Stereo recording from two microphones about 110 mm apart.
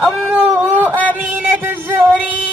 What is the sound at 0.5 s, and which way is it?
Speech, 15° right (ahead or behind).